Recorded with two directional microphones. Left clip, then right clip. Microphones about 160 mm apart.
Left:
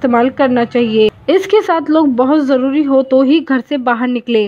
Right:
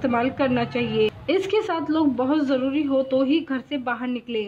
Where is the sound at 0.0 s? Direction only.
45° left (ahead or behind).